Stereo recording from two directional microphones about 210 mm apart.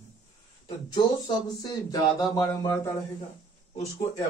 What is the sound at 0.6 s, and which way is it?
Speech, 20° left (ahead or behind).